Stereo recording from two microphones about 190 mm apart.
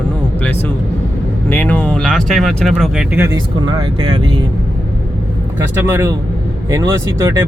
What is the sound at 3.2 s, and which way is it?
Speech, 25° right (ahead or behind).